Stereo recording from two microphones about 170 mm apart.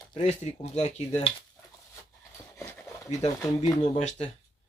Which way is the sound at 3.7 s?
25° left (ahead or behind).